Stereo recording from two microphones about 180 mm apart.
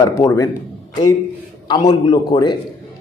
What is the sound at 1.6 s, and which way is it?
Speech, 25° left (ahead or behind).